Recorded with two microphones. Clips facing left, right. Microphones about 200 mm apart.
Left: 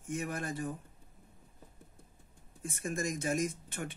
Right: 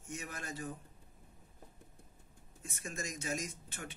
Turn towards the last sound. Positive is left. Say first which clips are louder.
# left 8 dB
turn(degrees=55)  # may be behind; listen again after turning